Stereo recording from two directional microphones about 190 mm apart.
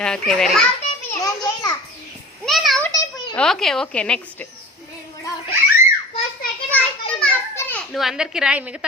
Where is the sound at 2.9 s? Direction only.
20° left (ahead or behind).